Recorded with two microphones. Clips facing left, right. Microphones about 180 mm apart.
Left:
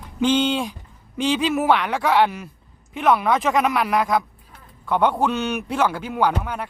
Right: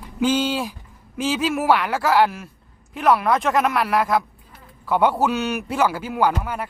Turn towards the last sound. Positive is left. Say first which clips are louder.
# right 1 dB
turn(degrees=-5)  # may be behind; listen again after turning